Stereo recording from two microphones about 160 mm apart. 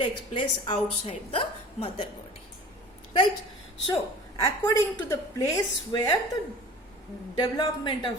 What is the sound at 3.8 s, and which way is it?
A woman's voice, 30° left (ahead or behind).